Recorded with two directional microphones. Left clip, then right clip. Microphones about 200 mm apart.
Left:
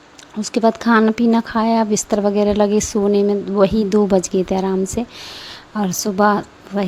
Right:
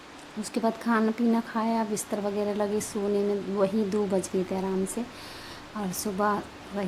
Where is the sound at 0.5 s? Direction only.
40° left (ahead or behind).